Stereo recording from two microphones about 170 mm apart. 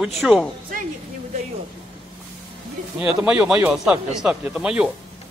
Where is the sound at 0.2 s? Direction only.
5° right (ahead or behind).